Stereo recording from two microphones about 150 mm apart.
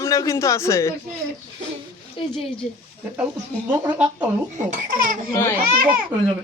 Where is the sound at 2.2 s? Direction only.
35° left (ahead or behind).